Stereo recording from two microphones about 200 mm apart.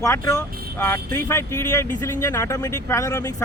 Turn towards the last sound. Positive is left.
turn(degrees=15)  # may be behind; listen again after turning